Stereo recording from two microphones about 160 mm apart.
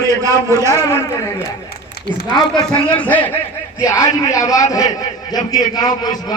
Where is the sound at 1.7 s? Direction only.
80° left.